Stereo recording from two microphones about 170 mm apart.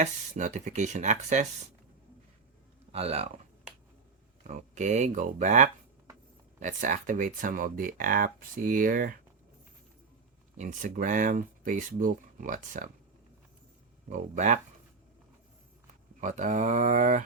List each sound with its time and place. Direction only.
0.0 s speech: 45° right (ahead or behind)
2.9 s speech: 35° right (ahead or behind)
4.4 s speech: 45° right (ahead or behind)
10.6 s speech: 45° right (ahead or behind)
14.1 s speech: 45° right (ahead or behind)
16.2 s speech: 45° right (ahead or behind)